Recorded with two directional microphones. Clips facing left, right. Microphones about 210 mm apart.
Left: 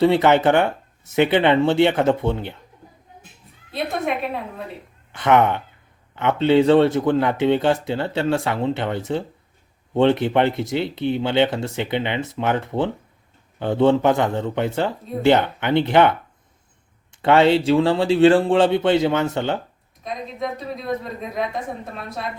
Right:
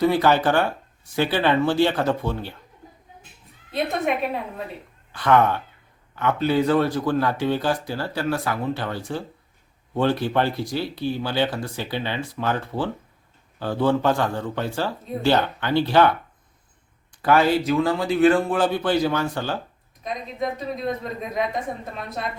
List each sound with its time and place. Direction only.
0.0 s speech: 25° left (ahead or behind)
3.7 s a woman's voice: centre (ahead or behind)
5.1 s speech: 20° left (ahead or behind)
20.2 s a woman's voice: centre (ahead or behind)